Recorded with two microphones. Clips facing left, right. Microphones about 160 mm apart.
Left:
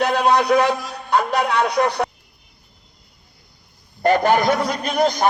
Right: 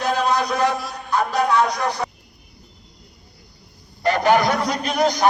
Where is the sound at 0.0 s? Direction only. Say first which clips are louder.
Left 3 dB; 65° left (ahead or behind).